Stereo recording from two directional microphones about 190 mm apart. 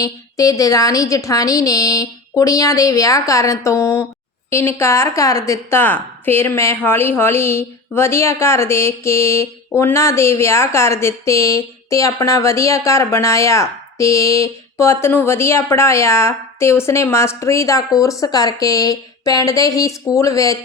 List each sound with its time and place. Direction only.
0.0 s a woman's voice: 15° left (ahead or behind)